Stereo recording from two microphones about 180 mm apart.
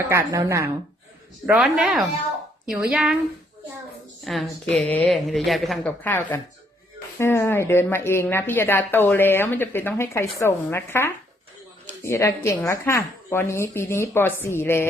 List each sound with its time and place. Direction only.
0.1 s a woman's voice: 15° right (ahead or behind)
1.5 s a woman's voice: 5° right (ahead or behind)
4.2 s a woman's voice: centre (ahead or behind)